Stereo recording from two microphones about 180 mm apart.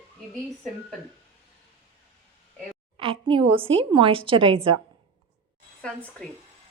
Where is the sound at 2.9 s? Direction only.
30° right (ahead or behind).